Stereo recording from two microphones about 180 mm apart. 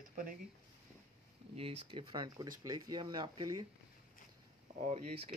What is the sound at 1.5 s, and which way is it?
Speech, 30° right (ahead or behind).